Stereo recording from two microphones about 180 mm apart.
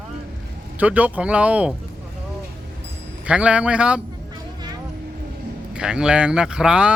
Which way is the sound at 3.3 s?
5° right (ahead or behind).